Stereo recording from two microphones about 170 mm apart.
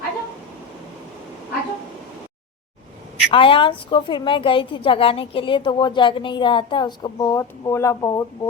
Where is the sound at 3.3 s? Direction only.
30° left (ahead or behind).